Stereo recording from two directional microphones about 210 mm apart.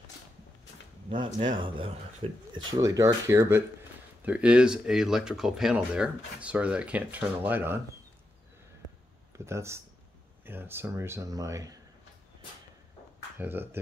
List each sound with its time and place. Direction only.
1.1 s speech: 20° right (ahead or behind)
9.4 s speech: 15° right (ahead or behind)
13.4 s speech: 10° right (ahead or behind)